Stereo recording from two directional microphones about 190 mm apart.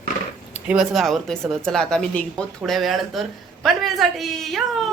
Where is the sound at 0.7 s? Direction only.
Centre (ahead or behind).